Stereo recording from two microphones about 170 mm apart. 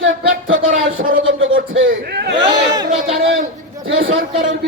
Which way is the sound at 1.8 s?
70° right (ahead or behind).